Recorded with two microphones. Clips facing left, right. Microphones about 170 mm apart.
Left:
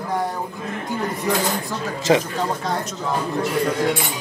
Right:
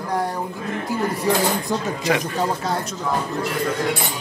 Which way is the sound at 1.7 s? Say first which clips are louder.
Right 4 dB; 20° right (ahead or behind).